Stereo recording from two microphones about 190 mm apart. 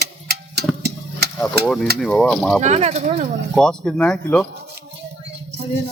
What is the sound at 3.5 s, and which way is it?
Speech, 5° left (ahead or behind).